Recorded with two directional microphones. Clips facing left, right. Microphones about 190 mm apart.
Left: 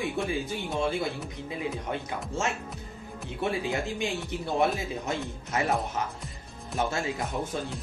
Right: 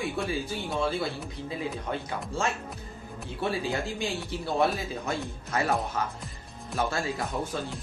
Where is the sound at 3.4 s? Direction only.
20° left (ahead or behind).